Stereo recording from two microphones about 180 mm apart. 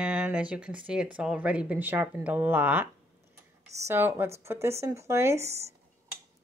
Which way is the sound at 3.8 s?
15° right (ahead or behind).